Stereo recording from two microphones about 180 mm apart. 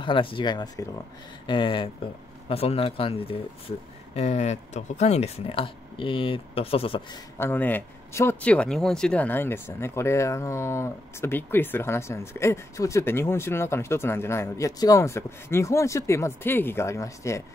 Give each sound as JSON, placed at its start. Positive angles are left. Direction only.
{"t": 0.0, "sound": "speech", "side_deg": 30}
{"t": 7.3, "sound": "speech", "side_deg": 10}